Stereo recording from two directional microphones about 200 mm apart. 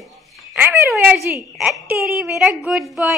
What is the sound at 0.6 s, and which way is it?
A woman's voice, 10° right (ahead or behind).